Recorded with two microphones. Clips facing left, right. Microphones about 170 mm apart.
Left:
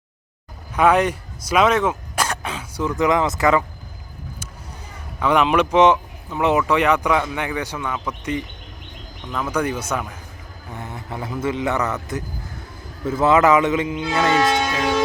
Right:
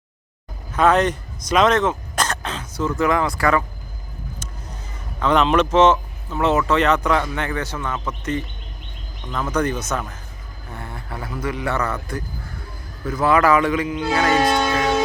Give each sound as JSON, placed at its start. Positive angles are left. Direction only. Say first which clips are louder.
{"t": 0.8, "sound": "speech", "louder": "even", "side_deg": 10}
{"t": 5.2, "sound": "speech", "louder": "even", "side_deg": 10}
{"t": 13.1, "sound": "speech", "louder": "left 1 dB", "side_deg": 25}